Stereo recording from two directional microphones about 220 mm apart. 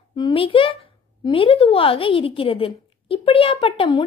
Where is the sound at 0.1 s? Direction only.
20° left (ahead or behind).